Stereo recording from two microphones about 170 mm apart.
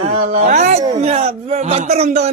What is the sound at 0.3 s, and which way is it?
Speech, 45° right (ahead or behind).